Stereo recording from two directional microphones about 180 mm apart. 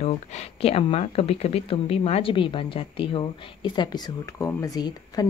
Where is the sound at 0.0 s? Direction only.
35° left (ahead or behind).